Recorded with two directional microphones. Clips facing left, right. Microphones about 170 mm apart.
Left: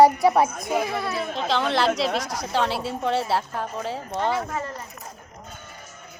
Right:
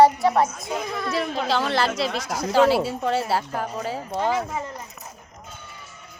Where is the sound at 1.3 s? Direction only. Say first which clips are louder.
Left 2 dB; 5° right (ahead or behind).